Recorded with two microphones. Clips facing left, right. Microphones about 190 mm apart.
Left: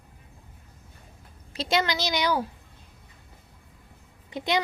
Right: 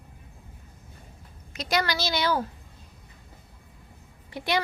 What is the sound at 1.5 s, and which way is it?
Speech, 25° left (ahead or behind).